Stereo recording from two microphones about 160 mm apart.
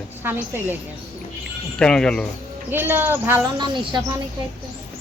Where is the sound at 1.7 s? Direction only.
5° left (ahead or behind).